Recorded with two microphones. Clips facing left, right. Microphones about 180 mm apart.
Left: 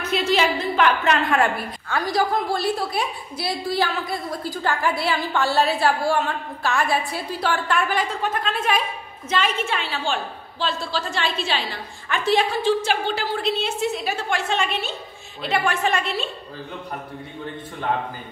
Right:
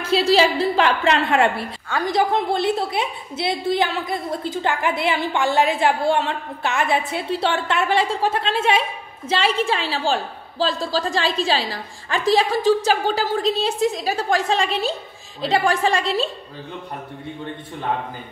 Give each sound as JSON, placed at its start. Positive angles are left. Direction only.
{"t": 0.0, "sound": "a woman's voice", "side_deg": -30}